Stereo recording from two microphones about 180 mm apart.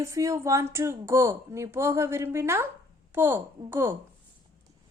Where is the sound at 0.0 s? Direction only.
15° right (ahead or behind).